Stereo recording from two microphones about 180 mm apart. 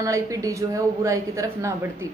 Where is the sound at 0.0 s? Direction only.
20° right (ahead or behind).